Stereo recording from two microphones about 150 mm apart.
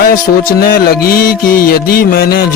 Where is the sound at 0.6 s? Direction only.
80° left.